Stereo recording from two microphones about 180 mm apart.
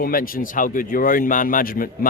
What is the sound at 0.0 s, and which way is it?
Speech, 50° left (ahead or behind).